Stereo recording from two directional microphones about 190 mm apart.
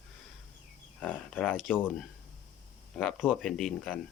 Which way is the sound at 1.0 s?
5° left (ahead or behind).